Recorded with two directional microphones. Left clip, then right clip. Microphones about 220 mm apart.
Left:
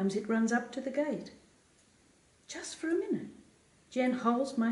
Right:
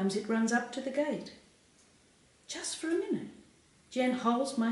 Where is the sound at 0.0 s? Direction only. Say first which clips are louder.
Even; 5° left (ahead or behind).